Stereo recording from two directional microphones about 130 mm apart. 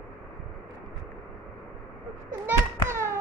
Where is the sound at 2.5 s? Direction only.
20° right (ahead or behind).